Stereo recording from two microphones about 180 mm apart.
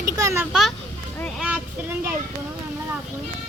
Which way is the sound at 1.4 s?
10° right (ahead or behind).